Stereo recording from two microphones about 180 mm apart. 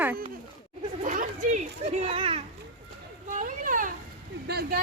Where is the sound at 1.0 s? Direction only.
45° right (ahead or behind).